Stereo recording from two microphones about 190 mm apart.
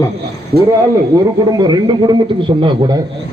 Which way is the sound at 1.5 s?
20° right (ahead or behind).